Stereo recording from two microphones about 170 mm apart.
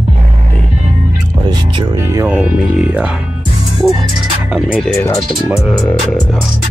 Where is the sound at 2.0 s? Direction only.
15° right (ahead or behind).